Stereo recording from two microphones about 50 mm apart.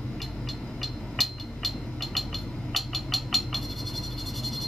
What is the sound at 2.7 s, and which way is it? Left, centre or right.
Frog, centre.